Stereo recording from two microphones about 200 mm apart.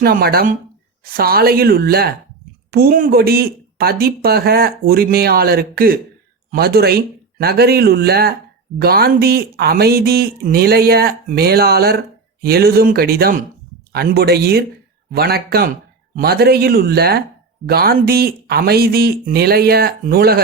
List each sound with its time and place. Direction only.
0.0 s speech: 50° right (ahead or behind)